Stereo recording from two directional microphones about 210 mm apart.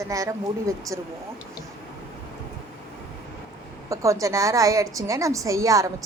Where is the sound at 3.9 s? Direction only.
15° right (ahead or behind).